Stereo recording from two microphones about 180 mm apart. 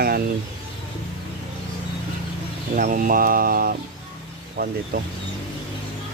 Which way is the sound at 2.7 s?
50° right (ahead or behind).